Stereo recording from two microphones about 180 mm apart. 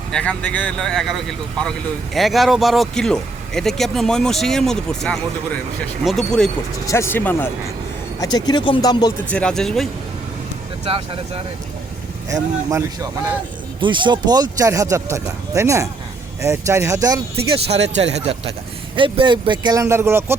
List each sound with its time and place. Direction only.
0.1 s speech: 5° left (ahead or behind)
6.8 s speech: 15° left (ahead or behind)
8.2 s speech: 20° left (ahead or behind)
9.3 s speech: 5° left (ahead or behind)
10.8 s speech: 30° right (ahead or behind)
13.8 s speech: 25° right (ahead or behind)
17.3 s speech: 35° right (ahead or behind); by 20.3 s 15° right (ahead or behind)